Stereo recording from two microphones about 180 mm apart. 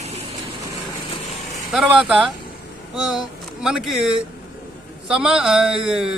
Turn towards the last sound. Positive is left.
turn(degrees=-5)  # may be behind; listen again after turning